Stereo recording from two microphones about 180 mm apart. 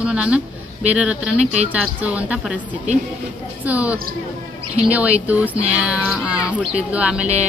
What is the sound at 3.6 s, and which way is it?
Speech, 10° right (ahead or behind).